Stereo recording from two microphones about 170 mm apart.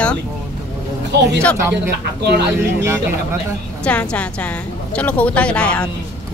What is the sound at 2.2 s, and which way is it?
Speech, 80° right.